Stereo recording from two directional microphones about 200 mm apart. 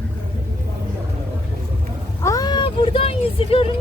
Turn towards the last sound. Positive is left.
turn(degrees=30)  # may be behind; listen again after turning